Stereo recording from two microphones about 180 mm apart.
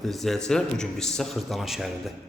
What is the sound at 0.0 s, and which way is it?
A man's voice, centre (ahead or behind).